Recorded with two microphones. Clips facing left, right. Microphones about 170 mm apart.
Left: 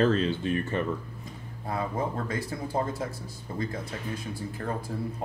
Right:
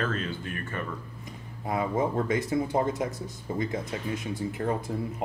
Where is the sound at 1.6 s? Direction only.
20° right (ahead or behind).